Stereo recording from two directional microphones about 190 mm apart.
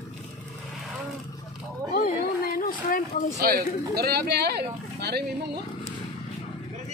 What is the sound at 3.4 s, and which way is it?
Speech, 55° right (ahead or behind).